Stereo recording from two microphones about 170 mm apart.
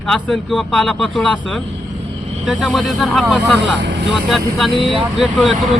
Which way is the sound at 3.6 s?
90° right.